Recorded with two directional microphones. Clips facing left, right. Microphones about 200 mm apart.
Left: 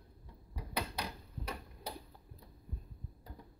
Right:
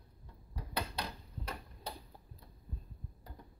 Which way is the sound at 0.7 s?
10° left (ahead or behind).